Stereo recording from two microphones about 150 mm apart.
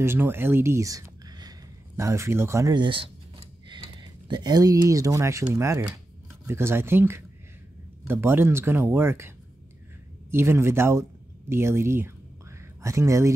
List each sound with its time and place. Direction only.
0.0 s speech: 15° right (ahead or behind)
10.3 s speech: 15° right (ahead or behind)